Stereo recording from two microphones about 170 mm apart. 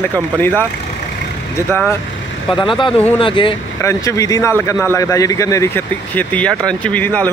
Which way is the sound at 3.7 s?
15° left (ahead or behind).